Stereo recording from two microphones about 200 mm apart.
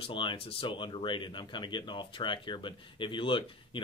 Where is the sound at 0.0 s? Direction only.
25° left (ahead or behind).